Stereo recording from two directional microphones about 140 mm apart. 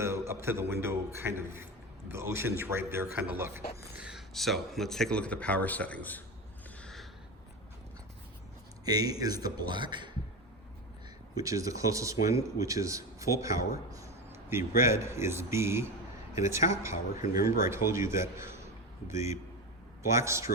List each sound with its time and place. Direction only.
0.0 s a sound: 20° right (ahead or behind)
0.4 s a man's voice: 20° right (ahead or behind)
3.9 s speech: 5° right (ahead or behind); by 6.2 s 10° left (ahead or behind)
6.8 s a sound: centre (ahead or behind)
8.8 s speech: 25° right (ahead or behind)
11.3 s speech: 25° right (ahead or behind)
17.3 s speech: 90° left
17.7 s speech: 20° right (ahead or behind)
20.0 s speech: 20° right (ahead or behind)